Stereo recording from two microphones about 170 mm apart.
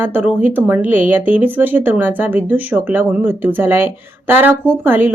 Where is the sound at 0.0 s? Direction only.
10° right (ahead or behind).